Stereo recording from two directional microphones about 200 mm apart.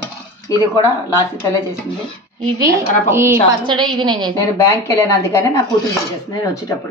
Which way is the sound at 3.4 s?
25° right (ahead or behind).